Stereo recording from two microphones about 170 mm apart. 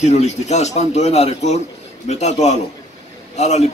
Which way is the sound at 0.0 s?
40° left (ahead or behind).